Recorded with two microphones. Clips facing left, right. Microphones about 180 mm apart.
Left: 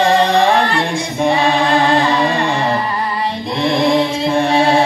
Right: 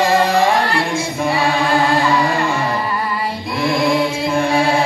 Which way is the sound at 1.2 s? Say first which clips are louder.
Left 4 dB; 25° left (ahead or behind).